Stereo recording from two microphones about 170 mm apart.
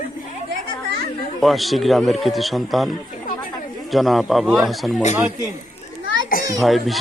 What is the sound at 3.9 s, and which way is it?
A man's voice, centre (ahead or behind).